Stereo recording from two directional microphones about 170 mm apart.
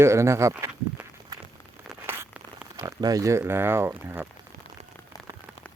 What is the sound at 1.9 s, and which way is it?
Tearing, 15° right (ahead or behind).